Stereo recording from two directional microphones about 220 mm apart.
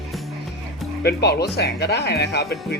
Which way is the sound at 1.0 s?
45° left (ahead or behind).